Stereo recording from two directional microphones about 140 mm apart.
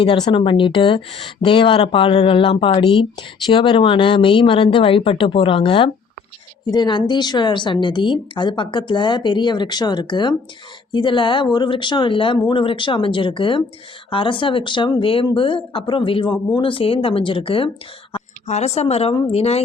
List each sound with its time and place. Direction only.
0.0 s speech: 35° left (ahead or behind)
18.4 s speech: 50° left (ahead or behind)